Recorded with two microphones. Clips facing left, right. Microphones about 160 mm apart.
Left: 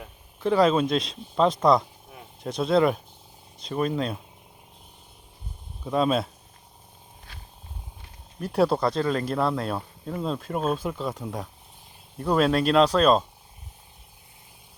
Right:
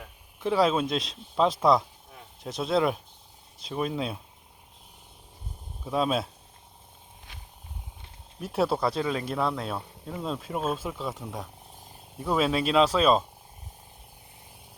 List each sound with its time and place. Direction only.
0.3 s speech: centre (ahead or behind)
5.8 s speech: centre (ahead or behind)
7.3 s purr: 20° right (ahead or behind)
8.4 s speech: centre (ahead or behind)